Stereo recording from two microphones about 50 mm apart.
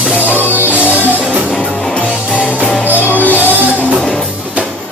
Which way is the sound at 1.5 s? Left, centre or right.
Centre.